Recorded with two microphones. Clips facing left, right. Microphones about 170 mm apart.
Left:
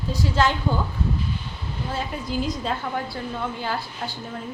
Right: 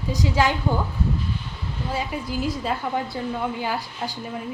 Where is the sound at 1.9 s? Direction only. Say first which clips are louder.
Right 1 dB; 10° right (ahead or behind).